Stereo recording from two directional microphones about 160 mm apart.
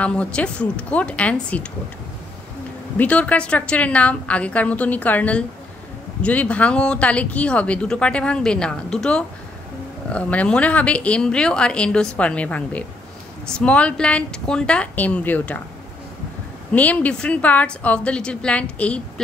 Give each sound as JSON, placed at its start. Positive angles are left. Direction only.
{"t": 0.0, "sound": "speech", "side_deg": 5}
{"t": 3.0, "sound": "speech", "side_deg": 10}
{"t": 16.7, "sound": "speech", "side_deg": 10}